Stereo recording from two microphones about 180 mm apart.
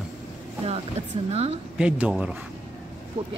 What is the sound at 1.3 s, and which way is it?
Speech, 35° right (ahead or behind).